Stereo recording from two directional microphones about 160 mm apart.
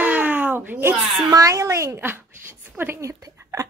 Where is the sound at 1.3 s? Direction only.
20° right (ahead or behind).